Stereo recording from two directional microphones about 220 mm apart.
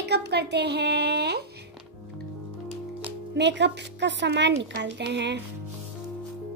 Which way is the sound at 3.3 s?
50° right (ahead or behind).